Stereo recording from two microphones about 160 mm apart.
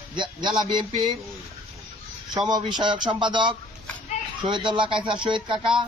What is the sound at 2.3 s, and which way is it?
A man's voice, 25° right (ahead or behind).